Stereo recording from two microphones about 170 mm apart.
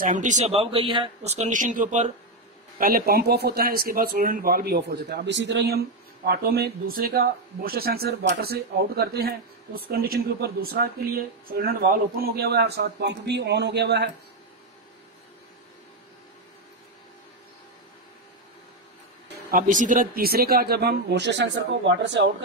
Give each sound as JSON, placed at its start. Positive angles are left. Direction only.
{"t": 0.0, "sound": "a man's voice", "side_deg": -50}
{"t": 2.8, "sound": "speech", "side_deg": -60}
{"t": 6.2, "sound": "speech", "side_deg": -65}
{"t": 19.5, "sound": "speech", "side_deg": -50}